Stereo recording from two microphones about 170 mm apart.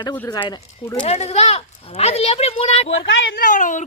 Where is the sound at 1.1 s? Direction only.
40° left (ahead or behind).